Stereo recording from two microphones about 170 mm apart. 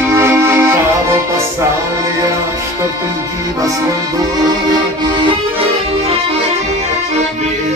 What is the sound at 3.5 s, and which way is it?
Accordion, 20° right (ahead or behind).